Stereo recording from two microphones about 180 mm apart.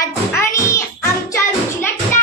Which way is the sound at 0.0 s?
15° left (ahead or behind).